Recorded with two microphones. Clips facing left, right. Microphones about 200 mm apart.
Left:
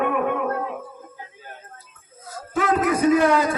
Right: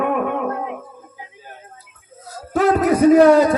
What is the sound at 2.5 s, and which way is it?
A man's voice, 40° right (ahead or behind).